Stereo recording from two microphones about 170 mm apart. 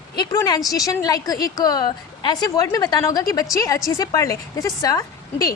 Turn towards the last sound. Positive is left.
turn(degrees=20)  # may be behind; listen again after turning